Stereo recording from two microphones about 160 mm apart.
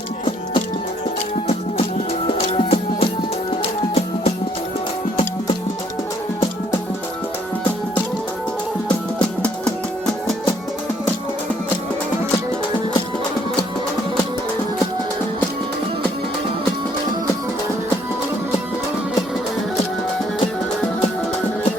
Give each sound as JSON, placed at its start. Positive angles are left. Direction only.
{"t": 2.2, "sound": "music", "side_deg": 40}
{"t": 9.4, "sound": "music", "side_deg": 5}